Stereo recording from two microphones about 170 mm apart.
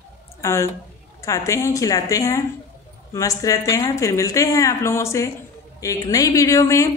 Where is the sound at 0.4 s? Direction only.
15° left (ahead or behind).